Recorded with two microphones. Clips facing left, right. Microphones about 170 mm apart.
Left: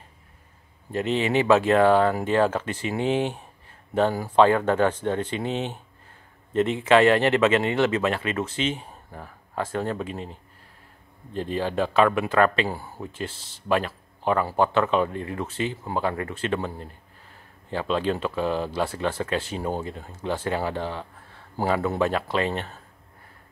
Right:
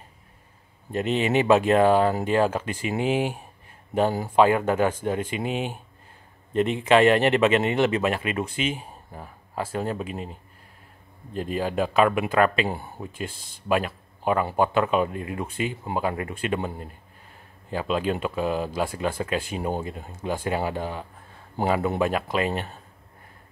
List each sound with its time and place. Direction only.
0.9 s speech: 20° right (ahead or behind)
11.5 s speech: 15° right (ahead or behind)